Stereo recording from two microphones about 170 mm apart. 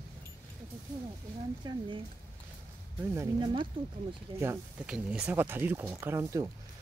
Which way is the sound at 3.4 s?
30° right (ahead or behind).